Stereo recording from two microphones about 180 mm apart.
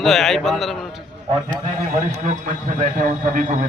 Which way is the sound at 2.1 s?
40° right (ahead or behind).